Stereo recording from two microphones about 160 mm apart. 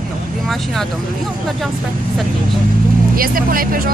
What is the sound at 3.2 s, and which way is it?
Speech, 60° right (ahead or behind).